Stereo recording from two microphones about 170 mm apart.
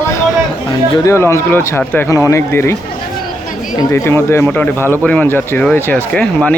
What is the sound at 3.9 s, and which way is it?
Speech, 15° left (ahead or behind).